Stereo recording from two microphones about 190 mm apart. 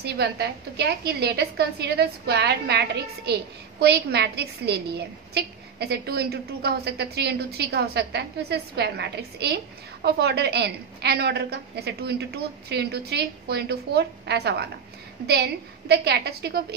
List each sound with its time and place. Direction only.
0.0 s a woman's voice: 60° right (ahead or behind)
15.9 s a woman's voice: 60° right (ahead or behind)